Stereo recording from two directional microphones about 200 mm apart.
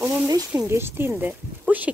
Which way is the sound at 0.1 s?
15° right (ahead or behind).